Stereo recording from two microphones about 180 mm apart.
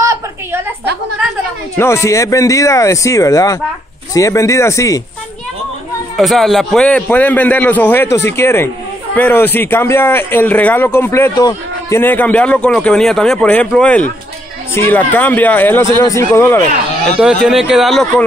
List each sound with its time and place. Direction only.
0.0 s a sound: 15° right (ahead or behind)
1.8 s a man's voice: 15° left (ahead or behind)
6.1 s a man's voice: centre (ahead or behind)
17.5 s speech: 5° right (ahead or behind)